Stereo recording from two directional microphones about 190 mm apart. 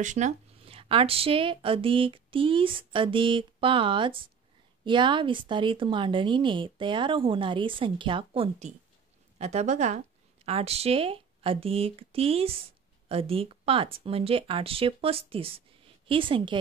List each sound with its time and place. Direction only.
0.0 s speech: 40° right (ahead or behind)